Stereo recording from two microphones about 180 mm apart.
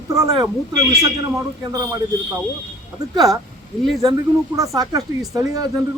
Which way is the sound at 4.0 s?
20° right (ahead or behind).